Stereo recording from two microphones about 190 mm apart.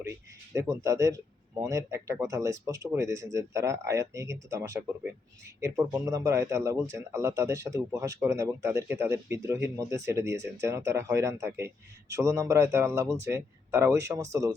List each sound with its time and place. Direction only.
0.0 s speech: 15° right (ahead or behind)